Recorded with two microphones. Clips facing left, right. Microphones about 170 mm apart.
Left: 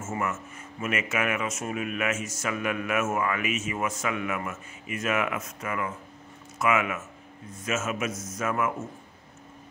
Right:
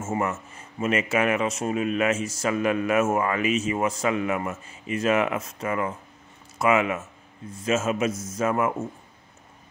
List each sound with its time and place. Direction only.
0.0 s speech: 30° right (ahead or behind)